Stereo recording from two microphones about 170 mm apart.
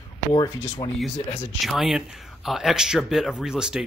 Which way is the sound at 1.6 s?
Centre (ahead or behind).